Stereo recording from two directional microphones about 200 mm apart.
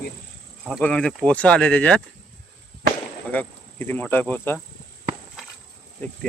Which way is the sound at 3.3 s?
10° left (ahead or behind).